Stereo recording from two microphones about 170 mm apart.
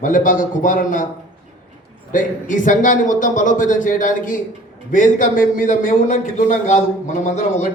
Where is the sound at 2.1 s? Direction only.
50° left (ahead or behind).